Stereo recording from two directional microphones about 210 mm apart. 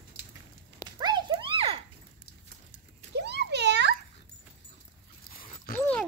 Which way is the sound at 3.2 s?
55° right (ahead or behind).